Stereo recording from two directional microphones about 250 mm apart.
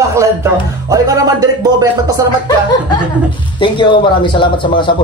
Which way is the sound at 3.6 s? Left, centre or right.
Centre.